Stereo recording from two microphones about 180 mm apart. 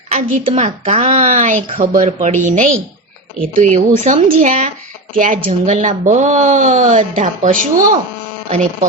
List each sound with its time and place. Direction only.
0.1 s a woman's voice: 40° right (ahead or behind)
8.4 s speech: 35° right (ahead or behind)